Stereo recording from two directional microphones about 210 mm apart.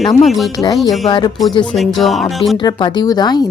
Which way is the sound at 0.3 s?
Centre (ahead or behind).